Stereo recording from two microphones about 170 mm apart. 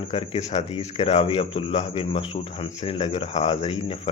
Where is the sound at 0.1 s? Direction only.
35° left (ahead or behind).